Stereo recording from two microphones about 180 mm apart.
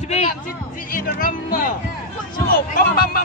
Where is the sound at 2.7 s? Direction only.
55° left (ahead or behind).